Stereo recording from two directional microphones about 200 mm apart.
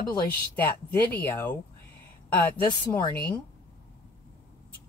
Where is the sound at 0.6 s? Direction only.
10° left (ahead or behind).